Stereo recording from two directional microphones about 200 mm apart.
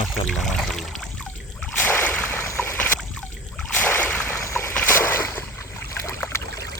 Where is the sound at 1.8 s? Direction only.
10° left (ahead or behind).